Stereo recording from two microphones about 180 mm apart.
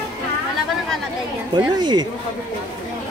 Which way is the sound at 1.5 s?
25° right (ahead or behind).